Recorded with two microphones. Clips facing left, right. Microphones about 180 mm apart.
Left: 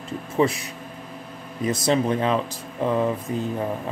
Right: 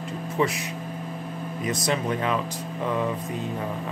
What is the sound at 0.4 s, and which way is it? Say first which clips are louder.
Speech: left 4 dB; 30° left (ahead or behind).